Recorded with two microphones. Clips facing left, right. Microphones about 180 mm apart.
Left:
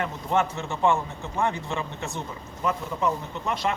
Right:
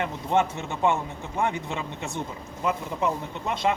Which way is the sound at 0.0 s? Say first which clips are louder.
Right 1 dB; 20° right (ahead or behind).